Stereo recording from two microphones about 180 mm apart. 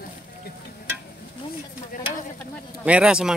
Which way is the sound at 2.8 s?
5° right (ahead or behind).